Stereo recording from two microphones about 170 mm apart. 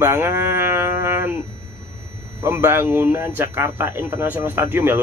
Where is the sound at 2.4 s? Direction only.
15° right (ahead or behind).